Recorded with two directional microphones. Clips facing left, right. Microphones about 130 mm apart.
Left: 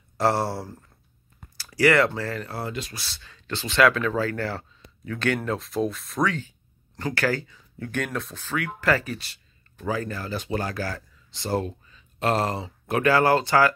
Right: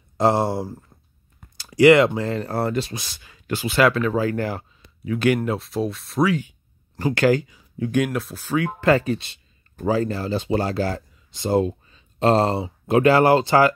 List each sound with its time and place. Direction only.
0.2 s speech: 20° right (ahead or behind); by 4.2 s centre (ahead or behind)
4.2 s speech: 15° right (ahead or behind)
8.5 s speech: 25° right (ahead or behind)